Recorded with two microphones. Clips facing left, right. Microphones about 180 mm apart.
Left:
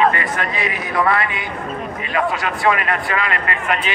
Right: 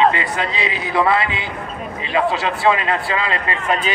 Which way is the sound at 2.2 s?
25° right (ahead or behind).